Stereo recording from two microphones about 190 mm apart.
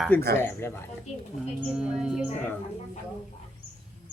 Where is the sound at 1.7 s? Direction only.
5° right (ahead or behind).